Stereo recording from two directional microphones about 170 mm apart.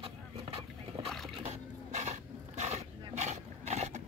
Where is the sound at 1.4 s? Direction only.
40° right (ahead or behind).